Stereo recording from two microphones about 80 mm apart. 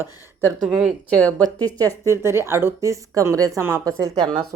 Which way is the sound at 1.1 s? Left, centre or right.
Centre.